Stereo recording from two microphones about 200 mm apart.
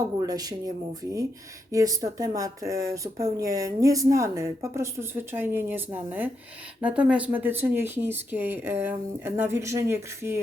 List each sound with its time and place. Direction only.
0.2 s speech: 20° right (ahead or behind)
1.7 s speech: 20° right (ahead or behind)